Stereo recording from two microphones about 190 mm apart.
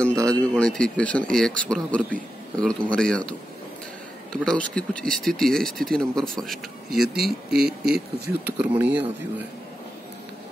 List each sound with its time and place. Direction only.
0.0 s speech: 5° left (ahead or behind)
7.2 s speech: 55° right (ahead or behind)
8.3 s speech: 10° right (ahead or behind)